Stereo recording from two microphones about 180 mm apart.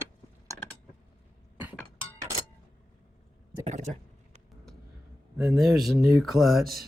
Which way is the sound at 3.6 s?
40° right (ahead or behind).